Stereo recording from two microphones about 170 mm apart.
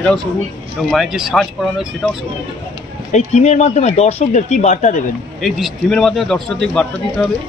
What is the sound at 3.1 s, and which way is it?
Speech, 45° left (ahead or behind).